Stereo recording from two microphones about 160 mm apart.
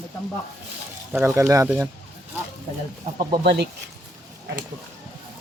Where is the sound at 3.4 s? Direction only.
80° right.